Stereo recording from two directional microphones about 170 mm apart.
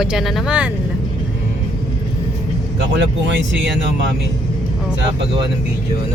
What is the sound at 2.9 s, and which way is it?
Speech, 90° right.